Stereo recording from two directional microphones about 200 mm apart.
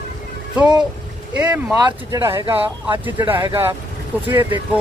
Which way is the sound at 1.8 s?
15° right (ahead or behind).